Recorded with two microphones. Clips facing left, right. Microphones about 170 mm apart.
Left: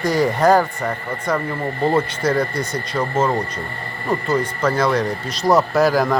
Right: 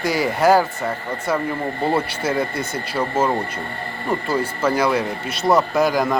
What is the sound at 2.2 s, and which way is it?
Speech, 25° right (ahead or behind).